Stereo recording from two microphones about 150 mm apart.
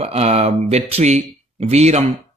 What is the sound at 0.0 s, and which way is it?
Speech, 45° right (ahead or behind).